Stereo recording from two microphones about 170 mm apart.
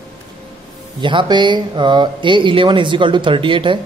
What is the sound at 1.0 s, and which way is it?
Speech, 30° right (ahead or behind).